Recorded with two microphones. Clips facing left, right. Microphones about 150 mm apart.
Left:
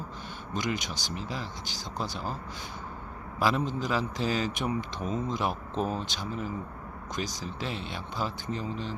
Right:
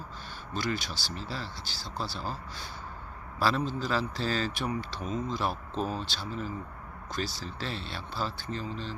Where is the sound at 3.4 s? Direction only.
15° left (ahead or behind).